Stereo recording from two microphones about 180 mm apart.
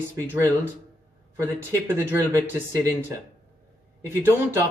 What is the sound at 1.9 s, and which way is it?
Speech, 10° right (ahead or behind).